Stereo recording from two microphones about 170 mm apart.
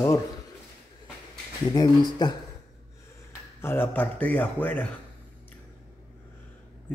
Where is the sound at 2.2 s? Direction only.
25° left (ahead or behind).